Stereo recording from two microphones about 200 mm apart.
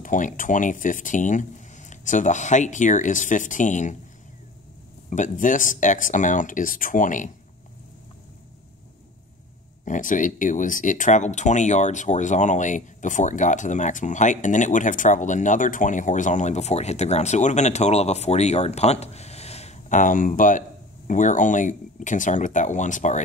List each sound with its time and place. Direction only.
0.0 s speech: 40° left (ahead or behind)
5.1 s speech: 40° left (ahead or behind)
9.8 s speech: 40° left (ahead or behind)